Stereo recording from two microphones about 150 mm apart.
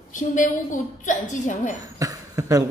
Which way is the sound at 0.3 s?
60° left (ahead or behind).